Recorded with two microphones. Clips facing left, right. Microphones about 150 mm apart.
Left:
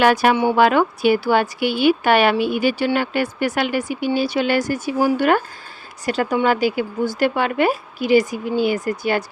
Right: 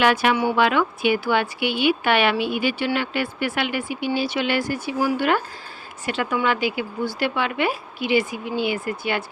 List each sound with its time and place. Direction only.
0.0 s speech: 40° left (ahead or behind)